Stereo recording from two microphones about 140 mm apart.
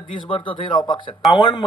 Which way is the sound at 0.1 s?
35° left (ahead or behind).